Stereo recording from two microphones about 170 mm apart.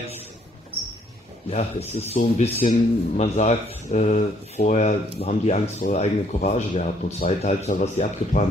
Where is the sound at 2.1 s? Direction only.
50° left (ahead or behind).